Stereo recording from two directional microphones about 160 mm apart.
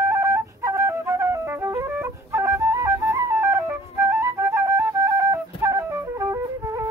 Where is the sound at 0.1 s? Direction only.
20° right (ahead or behind).